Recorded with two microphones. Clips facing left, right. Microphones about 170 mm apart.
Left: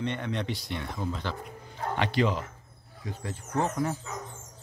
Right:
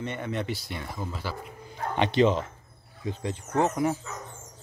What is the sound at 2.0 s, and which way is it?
Speech, 25° right (ahead or behind).